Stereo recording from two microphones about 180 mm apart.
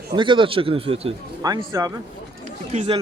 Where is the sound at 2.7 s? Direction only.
35° right (ahead or behind).